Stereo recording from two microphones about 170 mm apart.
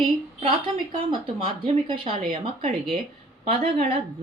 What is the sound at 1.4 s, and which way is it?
Speech, 30° right (ahead or behind).